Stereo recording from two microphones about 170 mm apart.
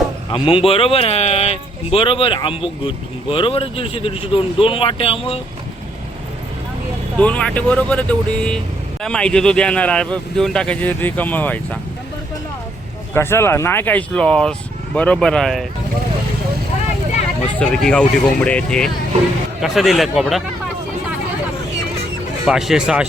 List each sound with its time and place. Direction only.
0.3 s speech: 30° left (ahead or behind)
7.2 s speech: 5° left (ahead or behind)
13.1 s speech: 15° left (ahead or behind)
17.6 s speech: 5° left (ahead or behind)
22.4 s speech: centre (ahead or behind)